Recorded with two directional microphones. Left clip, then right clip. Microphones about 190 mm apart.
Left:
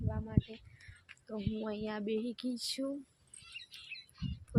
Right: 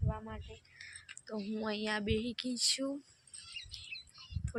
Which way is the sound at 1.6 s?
Centre (ahead or behind).